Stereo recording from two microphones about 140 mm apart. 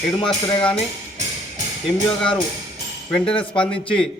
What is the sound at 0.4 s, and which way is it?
Speech, 40° left (ahead or behind).